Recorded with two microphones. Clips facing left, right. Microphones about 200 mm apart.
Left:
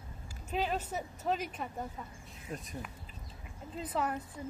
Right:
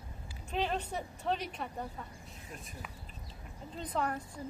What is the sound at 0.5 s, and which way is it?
A woman's voice, 5° left (ahead or behind).